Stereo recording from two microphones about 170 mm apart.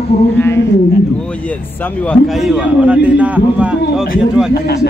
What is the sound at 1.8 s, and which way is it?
A man's voice, 5° left (ahead or behind).